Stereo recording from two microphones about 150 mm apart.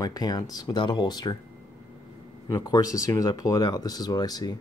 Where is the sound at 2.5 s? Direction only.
25° left (ahead or behind).